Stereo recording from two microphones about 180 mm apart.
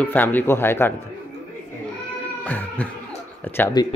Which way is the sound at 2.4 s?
10° left (ahead or behind).